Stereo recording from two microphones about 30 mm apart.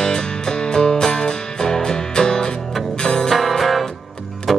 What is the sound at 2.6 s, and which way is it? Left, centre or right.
Music, centre.